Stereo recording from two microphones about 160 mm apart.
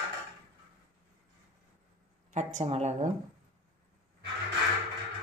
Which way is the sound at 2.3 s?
50° right (ahead or behind).